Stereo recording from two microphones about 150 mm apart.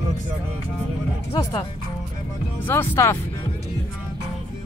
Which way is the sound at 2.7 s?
15° left (ahead or behind).